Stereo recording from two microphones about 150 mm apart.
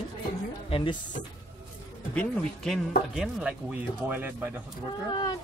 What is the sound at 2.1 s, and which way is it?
Speech, centre (ahead or behind).